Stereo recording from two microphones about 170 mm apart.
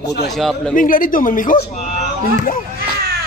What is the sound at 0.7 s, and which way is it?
Speech, 55° left (ahead or behind).